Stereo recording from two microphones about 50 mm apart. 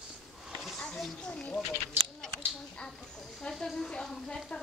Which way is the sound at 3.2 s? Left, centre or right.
Centre.